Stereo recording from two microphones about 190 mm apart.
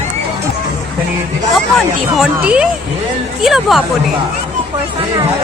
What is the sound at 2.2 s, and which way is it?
Speech, 5° right (ahead or behind).